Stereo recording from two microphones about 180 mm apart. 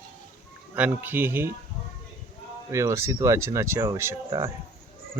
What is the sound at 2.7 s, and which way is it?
Speech, 15° right (ahead or behind).